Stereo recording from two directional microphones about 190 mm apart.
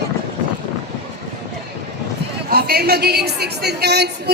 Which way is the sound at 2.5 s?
55° right (ahead or behind).